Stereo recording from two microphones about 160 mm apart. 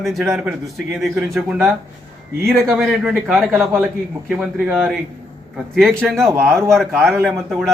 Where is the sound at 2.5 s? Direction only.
Centre (ahead or behind).